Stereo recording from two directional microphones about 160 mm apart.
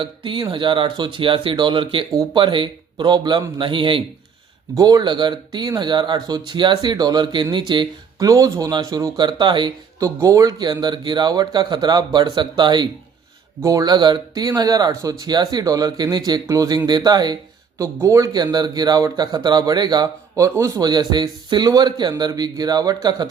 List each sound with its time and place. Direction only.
0.0 s speech: 30° right (ahead or behind)